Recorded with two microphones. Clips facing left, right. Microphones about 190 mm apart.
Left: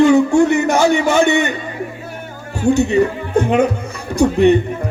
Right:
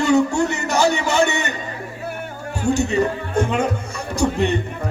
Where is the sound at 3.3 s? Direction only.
55° left (ahead or behind).